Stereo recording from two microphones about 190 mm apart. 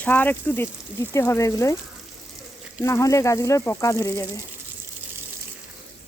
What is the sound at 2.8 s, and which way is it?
Speech, 15° left (ahead or behind).